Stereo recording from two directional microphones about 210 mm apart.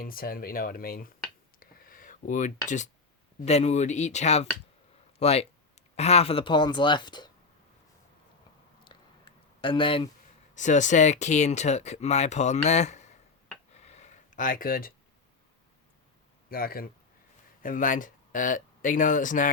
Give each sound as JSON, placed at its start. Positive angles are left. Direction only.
{"t": 0.0, "sound": "speech", "side_deg": 45}
{"t": 1.5, "sound": "a sound", "side_deg": 45}
{"t": 3.4, "sound": "speech", "side_deg": 30}
{"t": 9.6, "sound": "speech", "side_deg": 25}
{"t": 10.5, "sound": "speech", "side_deg": 35}
{"t": 13.7, "sound": "a sound", "side_deg": 30}
{"t": 16.5, "sound": "speech", "side_deg": 45}